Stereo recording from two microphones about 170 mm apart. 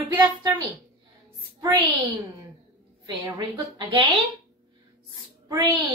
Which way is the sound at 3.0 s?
20° right (ahead or behind).